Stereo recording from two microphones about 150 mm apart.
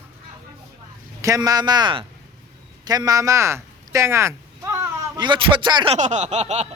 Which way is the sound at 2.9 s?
25° right (ahead or behind).